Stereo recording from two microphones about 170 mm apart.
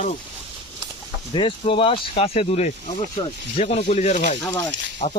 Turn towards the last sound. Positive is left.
turn(degrees=45)  # may be behind; listen again after turning